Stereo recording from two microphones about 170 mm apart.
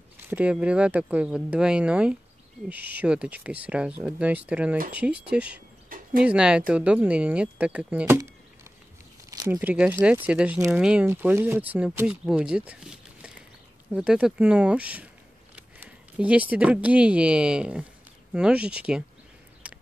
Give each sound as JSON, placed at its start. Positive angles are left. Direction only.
{"t": 0.3, "sound": "speech", "side_deg": -10}
{"t": 4.7, "sound": "speech", "side_deg": -55}
{"t": 5.3, "sound": "speech", "side_deg": -5}
{"t": 5.9, "sound": "a sound", "side_deg": -55}
{"t": 6.2, "sound": "speech", "side_deg": -5}
{"t": 9.5, "sound": "speech", "side_deg": -10}
{"t": 19.6, "sound": "a sound", "side_deg": -5}